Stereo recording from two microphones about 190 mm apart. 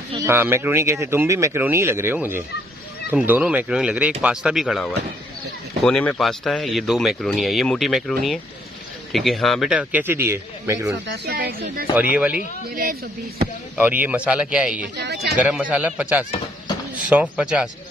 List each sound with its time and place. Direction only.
0.1 s speech: 15° right (ahead or behind)
11.2 s speech: 55° right (ahead or behind)
13.7 s speech: 10° right (ahead or behind)
14.8 s speech: 60° right (ahead or behind)
15.3 s speech: 5° right (ahead or behind)